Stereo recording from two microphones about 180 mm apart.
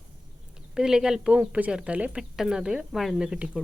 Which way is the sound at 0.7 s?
5° right (ahead or behind).